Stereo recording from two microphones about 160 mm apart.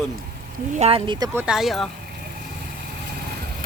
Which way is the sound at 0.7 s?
45° right (ahead or behind).